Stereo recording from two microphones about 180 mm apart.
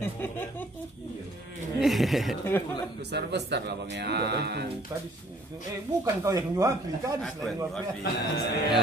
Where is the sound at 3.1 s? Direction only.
70° right (ahead or behind).